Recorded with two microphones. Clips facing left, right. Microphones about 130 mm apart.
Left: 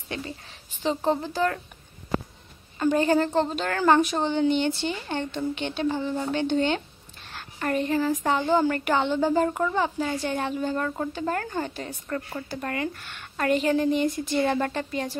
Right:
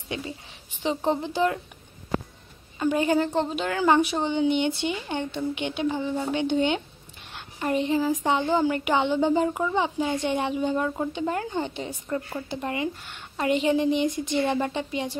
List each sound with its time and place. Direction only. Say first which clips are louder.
0.1 s a woman's voice: right 1 dB; 15° right (ahead or behind)
2.8 s a woman's voice: left 1 dB; 10° right (ahead or behind)